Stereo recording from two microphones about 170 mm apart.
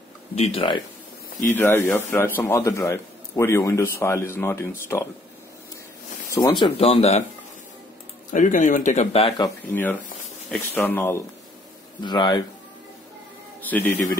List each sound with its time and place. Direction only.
0.4 s speech: 35° left (ahead or behind)
1.5 s a man's voice: 10° left (ahead or behind)
6.3 s speech: 25° left (ahead or behind)
8.3 s speech: 50° left (ahead or behind)
9.7 s a man's voice: 10° left (ahead or behind)
12.0 s speech: 25° left (ahead or behind)
13.6 s a man's voice: 10° left (ahead or behind)